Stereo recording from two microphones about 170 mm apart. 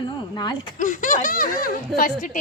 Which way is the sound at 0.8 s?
50° left (ahead or behind).